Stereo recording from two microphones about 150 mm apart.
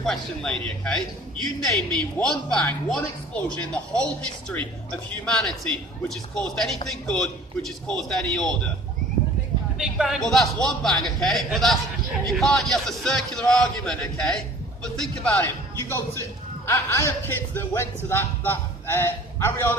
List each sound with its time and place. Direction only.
0.0 s music: 5° left (ahead or behind)
2.1 s a man's voice: 10° left (ahead or behind)
5.2 s music: 5° left (ahead or behind)
9.8 s music: 5° right (ahead or behind)
15.9 s a man's voice: 15° left (ahead or behind)